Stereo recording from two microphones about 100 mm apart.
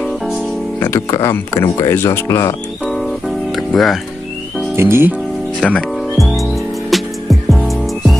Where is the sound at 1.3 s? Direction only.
25° left (ahead or behind).